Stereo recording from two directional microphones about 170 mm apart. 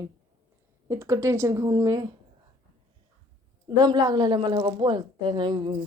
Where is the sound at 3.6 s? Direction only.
25° right (ahead or behind).